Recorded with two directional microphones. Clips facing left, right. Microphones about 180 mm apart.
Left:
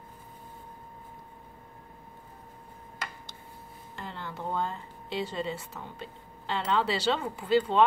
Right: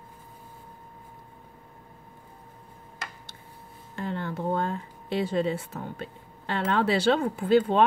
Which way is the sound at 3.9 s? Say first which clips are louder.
Right 8 dB; 55° right (ahead or behind).